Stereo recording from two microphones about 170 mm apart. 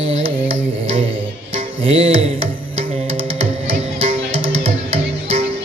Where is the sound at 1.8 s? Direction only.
35° right (ahead or behind).